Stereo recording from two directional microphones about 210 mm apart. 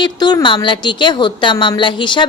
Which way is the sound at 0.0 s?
20° left (ahead or behind).